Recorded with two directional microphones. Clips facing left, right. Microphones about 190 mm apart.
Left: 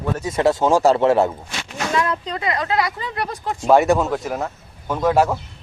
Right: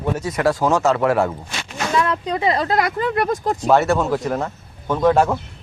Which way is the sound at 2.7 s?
50° right (ahead or behind).